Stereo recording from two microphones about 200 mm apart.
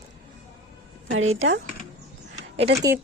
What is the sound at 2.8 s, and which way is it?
Speech, 15° right (ahead or behind).